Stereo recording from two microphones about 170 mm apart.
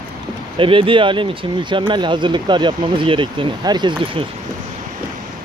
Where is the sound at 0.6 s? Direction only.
30° right (ahead or behind).